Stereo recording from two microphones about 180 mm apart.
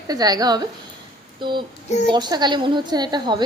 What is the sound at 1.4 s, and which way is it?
Child singing, 25° right (ahead or behind).